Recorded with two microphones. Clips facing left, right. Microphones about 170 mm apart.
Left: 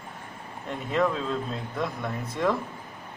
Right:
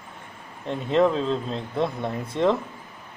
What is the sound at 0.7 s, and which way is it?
Speech, 25° right (ahead or behind).